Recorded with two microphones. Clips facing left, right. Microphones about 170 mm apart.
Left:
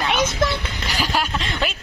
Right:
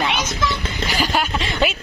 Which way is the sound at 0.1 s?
55° left (ahead or behind).